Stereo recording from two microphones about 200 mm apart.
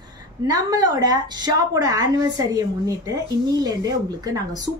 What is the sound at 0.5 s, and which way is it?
A woman's voice, 15° right (ahead or behind).